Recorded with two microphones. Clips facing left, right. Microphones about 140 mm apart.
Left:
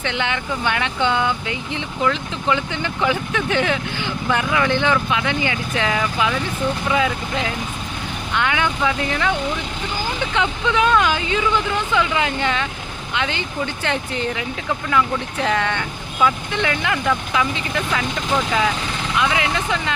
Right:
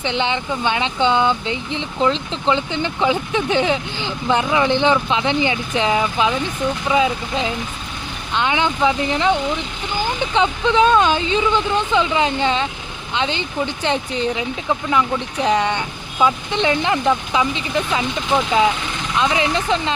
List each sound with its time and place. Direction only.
0.0 s speech: 20° right (ahead or behind)
10.3 s speech: 25° right (ahead or behind)
19.1 s speech: 25° right (ahead or behind)